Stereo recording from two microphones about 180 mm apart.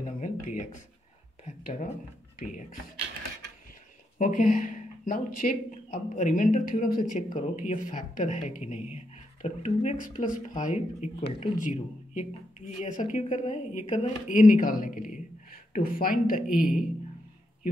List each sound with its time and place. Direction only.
0.0 s a sound: 45° left (ahead or behind)
1.6 s speech: 45° left (ahead or behind)
4.2 s speech: 45° left (ahead or behind)
11.6 s speech: 45° left (ahead or behind)